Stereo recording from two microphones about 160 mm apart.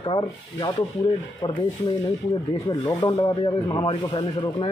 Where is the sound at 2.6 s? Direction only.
25° left (ahead or behind).